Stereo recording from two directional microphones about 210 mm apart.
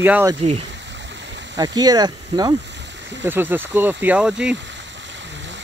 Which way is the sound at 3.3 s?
10° right (ahead or behind).